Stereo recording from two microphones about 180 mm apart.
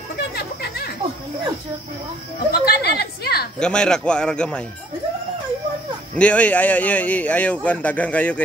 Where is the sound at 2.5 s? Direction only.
65° left (ahead or behind).